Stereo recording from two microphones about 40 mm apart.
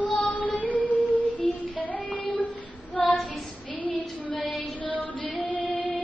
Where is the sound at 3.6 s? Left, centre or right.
Left.